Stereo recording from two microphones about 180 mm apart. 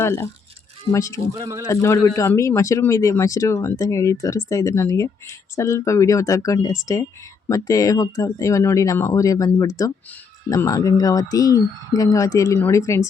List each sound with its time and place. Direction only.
0.0 s speech: 15° left (ahead or behind)
1.3 s speech: 15° right (ahead or behind)
1.6 s speech: 15° left (ahead or behind)